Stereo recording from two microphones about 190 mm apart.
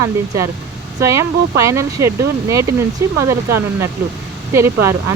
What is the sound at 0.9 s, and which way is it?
Speech, 15° right (ahead or behind).